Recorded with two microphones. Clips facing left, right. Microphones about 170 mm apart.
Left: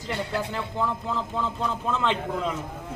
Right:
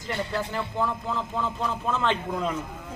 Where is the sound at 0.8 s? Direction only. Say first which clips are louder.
Left 1 dB; centre (ahead or behind).